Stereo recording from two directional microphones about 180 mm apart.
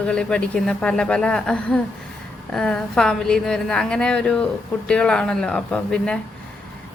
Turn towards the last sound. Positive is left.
turn(degrees=5)  # may be behind; listen again after turning